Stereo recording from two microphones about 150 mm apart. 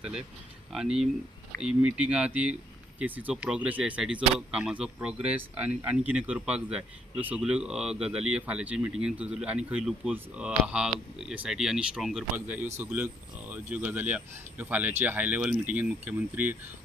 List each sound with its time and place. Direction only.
0.7 s speech: 5° right (ahead or behind)